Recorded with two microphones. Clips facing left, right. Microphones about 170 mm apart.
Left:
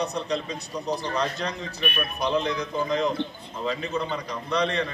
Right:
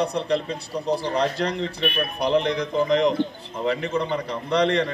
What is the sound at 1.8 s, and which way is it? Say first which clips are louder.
Speech: right 4 dB; 60° right (ahead or behind).